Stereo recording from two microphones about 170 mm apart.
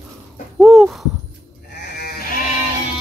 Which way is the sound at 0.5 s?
Centre (ahead or behind).